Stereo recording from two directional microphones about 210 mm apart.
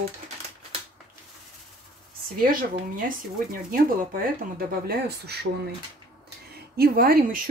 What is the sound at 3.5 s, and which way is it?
A woman's voice, 40° right (ahead or behind).